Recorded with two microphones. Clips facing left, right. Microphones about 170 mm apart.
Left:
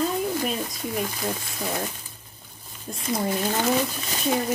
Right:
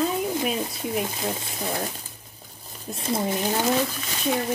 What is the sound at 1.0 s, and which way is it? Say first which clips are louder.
Speech: even; 25° right (ahead or behind).